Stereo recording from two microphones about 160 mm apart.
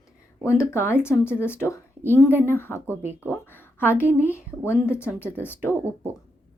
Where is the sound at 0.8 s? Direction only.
10° right (ahead or behind).